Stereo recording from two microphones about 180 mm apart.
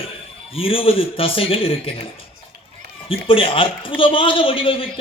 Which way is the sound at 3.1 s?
30° left (ahead or behind).